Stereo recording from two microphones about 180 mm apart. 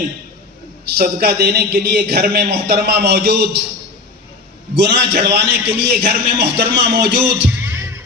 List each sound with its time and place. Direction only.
0.9 s speech: 60° right (ahead or behind)
4.8 s a man's voice: 70° right (ahead or behind)
7.6 s music: 15° right (ahead or behind)